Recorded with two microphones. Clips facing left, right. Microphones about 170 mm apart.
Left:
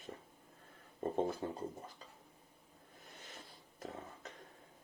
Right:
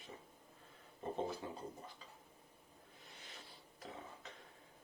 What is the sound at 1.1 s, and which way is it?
Speech, 50° left (ahead or behind).